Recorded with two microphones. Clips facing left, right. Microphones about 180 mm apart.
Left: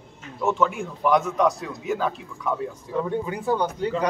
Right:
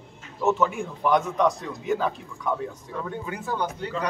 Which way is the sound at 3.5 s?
15° left (ahead or behind).